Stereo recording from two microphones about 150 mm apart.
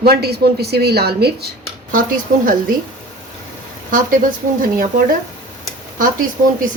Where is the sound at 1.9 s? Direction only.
65° right (ahead or behind).